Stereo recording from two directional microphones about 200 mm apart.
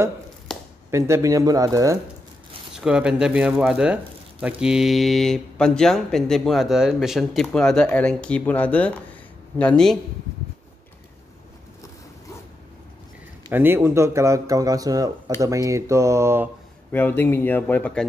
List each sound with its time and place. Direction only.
0.9 s speech: 15° right (ahead or behind)
2.7 s speech: 5° right (ahead or behind)
13.5 s speech: 10° right (ahead or behind)
16.9 s speech: 10° left (ahead or behind)